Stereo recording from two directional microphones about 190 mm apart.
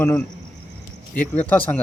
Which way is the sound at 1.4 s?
10° left (ahead or behind).